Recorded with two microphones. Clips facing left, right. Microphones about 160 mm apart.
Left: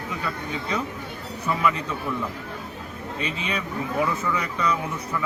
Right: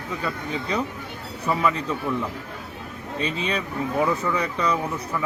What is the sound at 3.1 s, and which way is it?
Speech, 35° right (ahead or behind).